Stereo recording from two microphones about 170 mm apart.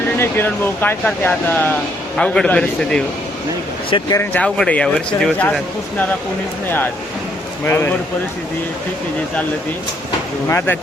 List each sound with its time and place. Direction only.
0.2 s speech: 10° left (ahead or behind)
3.8 s speech: 30° left (ahead or behind)
4.2 s speech: 10° left (ahead or behind)
7.6 s speech: 10° left (ahead or behind)